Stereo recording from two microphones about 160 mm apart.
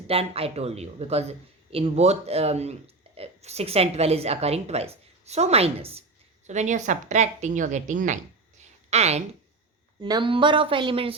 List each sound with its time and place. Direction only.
0.1 s a woman's voice: 35° right (ahead or behind)
10.0 s a woman's voice: 30° right (ahead or behind)